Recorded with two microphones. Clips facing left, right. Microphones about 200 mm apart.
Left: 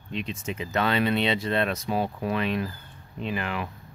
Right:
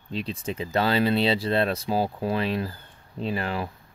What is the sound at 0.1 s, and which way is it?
Speech, 35° right (ahead or behind).